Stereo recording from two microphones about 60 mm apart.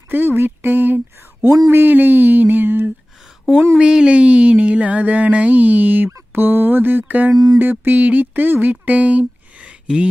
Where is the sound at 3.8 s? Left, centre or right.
Centre.